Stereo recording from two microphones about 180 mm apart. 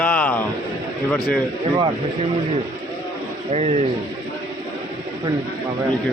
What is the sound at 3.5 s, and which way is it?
Speech, 35° right (ahead or behind).